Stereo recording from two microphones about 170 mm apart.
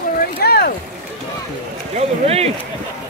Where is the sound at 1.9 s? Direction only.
35° right (ahead or behind).